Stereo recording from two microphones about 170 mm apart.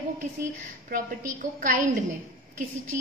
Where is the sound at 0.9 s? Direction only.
50° right (ahead or behind).